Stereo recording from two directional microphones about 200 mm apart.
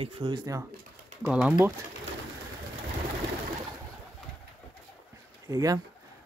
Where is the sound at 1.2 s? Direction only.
5° right (ahead or behind).